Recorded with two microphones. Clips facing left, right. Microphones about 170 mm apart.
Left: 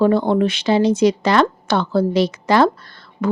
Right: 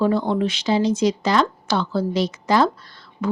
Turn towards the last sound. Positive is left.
turn(degrees=55)  # may be behind; listen again after turning